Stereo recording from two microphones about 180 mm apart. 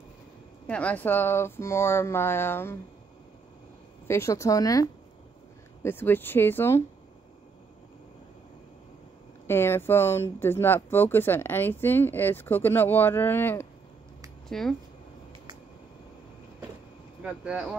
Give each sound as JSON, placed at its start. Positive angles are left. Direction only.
{"t": 0.7, "sound": "speech", "side_deg": 5}
{"t": 4.1, "sound": "speech", "side_deg": 15}
{"t": 9.5, "sound": "speech", "side_deg": 15}
{"t": 17.2, "sound": "speech", "side_deg": -5}